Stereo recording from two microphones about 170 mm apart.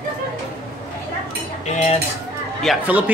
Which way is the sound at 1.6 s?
40° left (ahead or behind).